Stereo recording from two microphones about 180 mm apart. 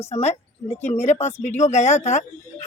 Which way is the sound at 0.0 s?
40° left (ahead or behind).